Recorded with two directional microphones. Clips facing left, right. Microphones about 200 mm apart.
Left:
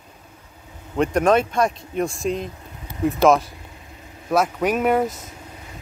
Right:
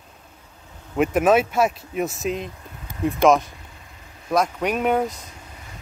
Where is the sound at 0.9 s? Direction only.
5° right (ahead or behind).